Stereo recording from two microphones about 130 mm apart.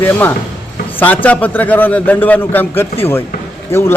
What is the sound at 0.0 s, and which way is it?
A man's voice, 15° left (ahead or behind).